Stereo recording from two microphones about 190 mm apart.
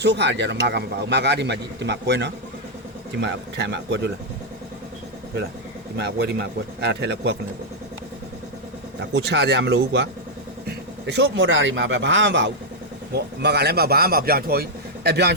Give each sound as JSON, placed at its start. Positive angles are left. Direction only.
{"t": 0.0, "sound": "a man's voice", "side_deg": -65}
{"t": 6.0, "sound": "a man's voice", "side_deg": -60}
{"t": 9.0, "sound": "a man's voice", "side_deg": -65}
{"t": 13.1, "sound": "a man's voice", "side_deg": -60}